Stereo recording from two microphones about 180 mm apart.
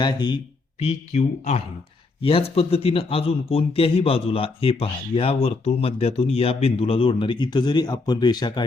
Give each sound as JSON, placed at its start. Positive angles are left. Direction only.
{"t": 0.0, "sound": "speech", "side_deg": 25}
{"t": 0.8, "sound": "speech", "side_deg": 40}